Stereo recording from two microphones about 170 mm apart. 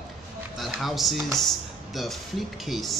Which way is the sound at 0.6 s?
Centre (ahead or behind).